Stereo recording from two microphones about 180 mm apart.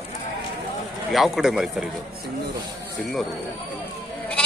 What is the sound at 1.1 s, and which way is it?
Speech, centre (ahead or behind).